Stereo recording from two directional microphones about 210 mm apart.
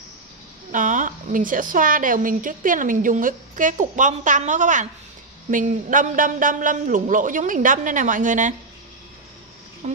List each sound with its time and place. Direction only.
0.7 s a woman's voice: 40° right (ahead or behind)